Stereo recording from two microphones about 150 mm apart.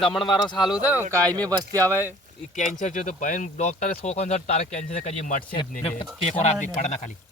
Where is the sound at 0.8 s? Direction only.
10° right (ahead or behind).